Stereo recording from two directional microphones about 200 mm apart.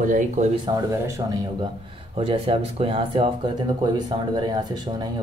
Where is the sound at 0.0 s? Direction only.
40° right (ahead or behind).